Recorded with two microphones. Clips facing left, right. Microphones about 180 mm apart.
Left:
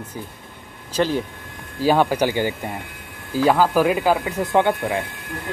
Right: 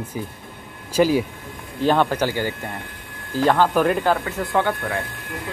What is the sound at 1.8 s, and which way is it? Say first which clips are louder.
Speech: left 1 dB; 10° left (ahead or behind).